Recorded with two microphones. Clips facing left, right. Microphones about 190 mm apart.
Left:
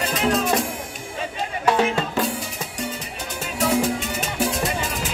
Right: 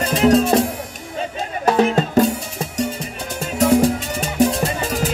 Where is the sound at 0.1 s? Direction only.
35° right (ahead or behind).